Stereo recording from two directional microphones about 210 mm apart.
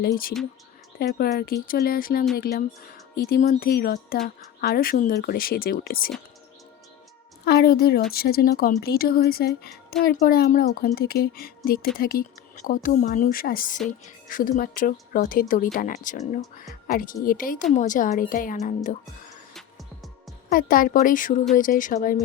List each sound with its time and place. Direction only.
0.0 s a woman's voice: 45° left (ahead or behind)
7.4 s a woman's voice: 50° left (ahead or behind)
20.5 s speech: 45° left (ahead or behind)